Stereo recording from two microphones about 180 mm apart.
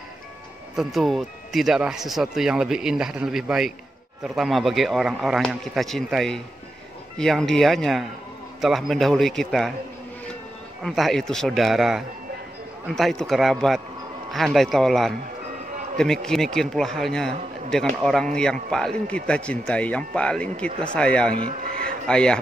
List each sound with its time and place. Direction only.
0.7 s a man's voice: centre (ahead or behind)
10.8 s a man's voice: centre (ahead or behind)
21.5 s speech: 55° right (ahead or behind)
22.0 s a man's voice: 5° left (ahead or behind)